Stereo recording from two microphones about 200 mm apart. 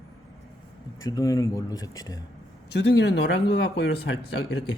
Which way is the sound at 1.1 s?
15° left (ahead or behind).